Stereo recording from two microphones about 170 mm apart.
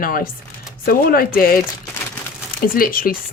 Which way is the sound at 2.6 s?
55° left (ahead or behind).